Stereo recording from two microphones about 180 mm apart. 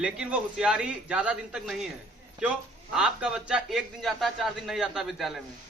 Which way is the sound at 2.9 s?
5° right (ahead or behind).